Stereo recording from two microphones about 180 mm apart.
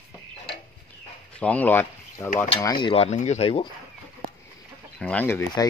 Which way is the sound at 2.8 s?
35° left (ahead or behind).